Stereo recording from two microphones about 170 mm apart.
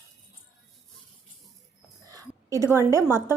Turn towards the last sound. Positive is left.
turn(degrees=-15)  # may be behind; listen again after turning